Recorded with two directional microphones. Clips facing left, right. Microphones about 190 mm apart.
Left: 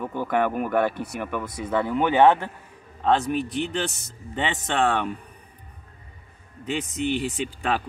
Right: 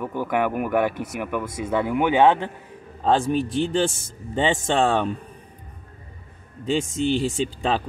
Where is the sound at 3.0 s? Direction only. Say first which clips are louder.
Right 2 dB; 30° right (ahead or behind).